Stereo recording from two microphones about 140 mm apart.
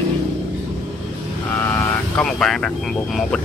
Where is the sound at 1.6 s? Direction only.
15° left (ahead or behind).